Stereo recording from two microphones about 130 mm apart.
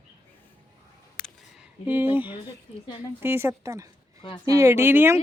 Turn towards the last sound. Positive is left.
turn(degrees=-15)  # may be behind; listen again after turning